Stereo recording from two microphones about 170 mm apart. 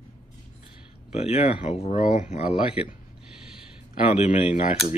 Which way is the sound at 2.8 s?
10° right (ahead or behind).